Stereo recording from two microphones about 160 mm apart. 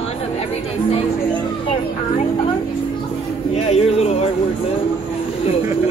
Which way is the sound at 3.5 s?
40° left (ahead or behind).